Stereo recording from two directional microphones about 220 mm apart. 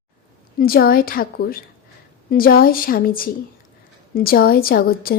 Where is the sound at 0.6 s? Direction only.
45° left (ahead or behind).